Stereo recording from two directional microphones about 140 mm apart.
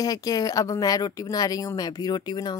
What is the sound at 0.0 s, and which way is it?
Speech, 25° left (ahead or behind).